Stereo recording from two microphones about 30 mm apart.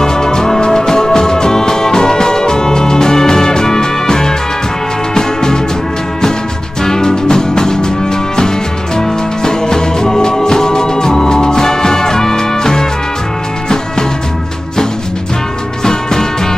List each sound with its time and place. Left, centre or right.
0.0 s music: left
6.8 s music: left
15.8 s music: left